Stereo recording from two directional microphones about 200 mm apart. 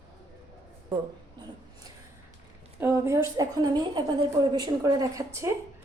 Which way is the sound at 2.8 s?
15° right (ahead or behind).